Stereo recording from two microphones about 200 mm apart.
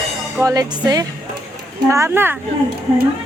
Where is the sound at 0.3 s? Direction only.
20° right (ahead or behind).